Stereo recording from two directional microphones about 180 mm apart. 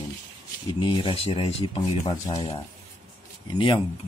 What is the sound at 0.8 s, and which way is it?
Speech, 25° left (ahead or behind).